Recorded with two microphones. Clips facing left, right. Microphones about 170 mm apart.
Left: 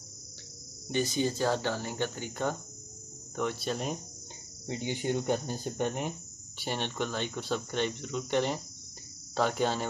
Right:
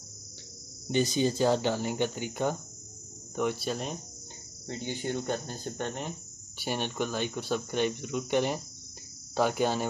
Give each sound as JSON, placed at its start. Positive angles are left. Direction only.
{"t": 0.9, "sound": "speech", "side_deg": -20}
{"t": 4.6, "sound": "speech", "side_deg": 15}
{"t": 6.6, "sound": "speech", "side_deg": -5}